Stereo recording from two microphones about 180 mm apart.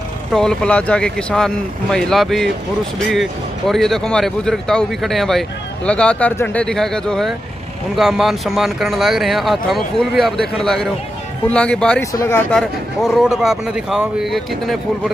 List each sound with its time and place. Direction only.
0.3 s speech: 5° left (ahead or behind)
12.0 s speech: 15° left (ahead or behind)
12.4 s speech: centre (ahead or behind)